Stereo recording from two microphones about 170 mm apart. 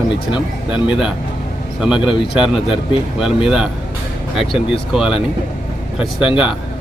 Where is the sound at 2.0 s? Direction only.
30° left (ahead or behind).